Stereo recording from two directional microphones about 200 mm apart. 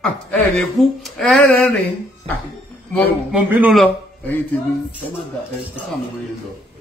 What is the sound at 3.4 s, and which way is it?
A man's voice, 5° right (ahead or behind).